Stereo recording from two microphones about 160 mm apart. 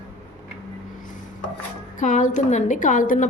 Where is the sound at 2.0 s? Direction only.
55° left (ahead or behind).